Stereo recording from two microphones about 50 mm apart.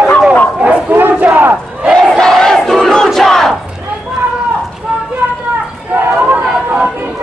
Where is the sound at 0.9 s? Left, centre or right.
Right.